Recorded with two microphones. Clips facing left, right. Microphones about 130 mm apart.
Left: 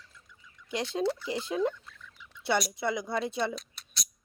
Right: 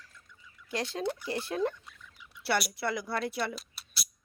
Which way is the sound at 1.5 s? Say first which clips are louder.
Left 2 dB; 15° left (ahead or behind).